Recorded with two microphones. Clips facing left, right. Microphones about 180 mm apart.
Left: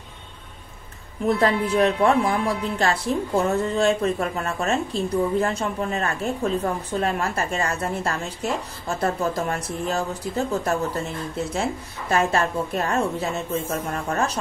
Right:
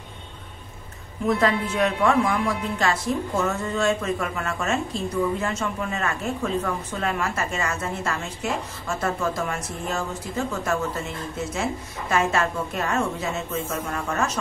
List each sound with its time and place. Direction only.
1.4 s speech: 35° left (ahead or behind)